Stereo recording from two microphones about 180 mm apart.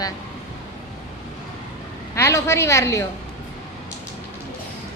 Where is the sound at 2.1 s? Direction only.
15° left (ahead or behind).